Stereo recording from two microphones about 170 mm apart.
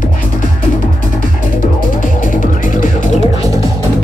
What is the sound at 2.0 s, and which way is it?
Music, 50° left (ahead or behind).